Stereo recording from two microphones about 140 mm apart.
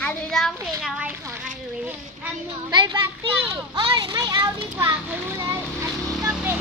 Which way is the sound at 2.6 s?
30° right (ahead or behind).